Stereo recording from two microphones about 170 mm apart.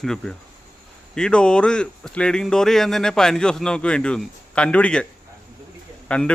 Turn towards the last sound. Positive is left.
turn(degrees=5)  # may be behind; listen again after turning